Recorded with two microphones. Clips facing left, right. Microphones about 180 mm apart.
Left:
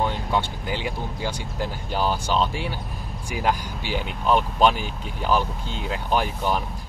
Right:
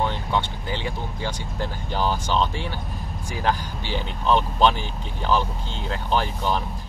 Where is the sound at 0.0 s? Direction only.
10° left (ahead or behind).